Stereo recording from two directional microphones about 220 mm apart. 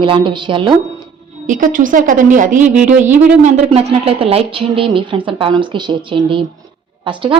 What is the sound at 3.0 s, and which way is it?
Speech, 10° right (ahead or behind).